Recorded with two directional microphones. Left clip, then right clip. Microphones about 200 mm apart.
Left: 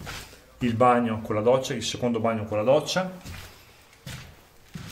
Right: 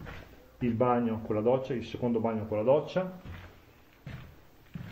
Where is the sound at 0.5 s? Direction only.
5° right (ahead or behind).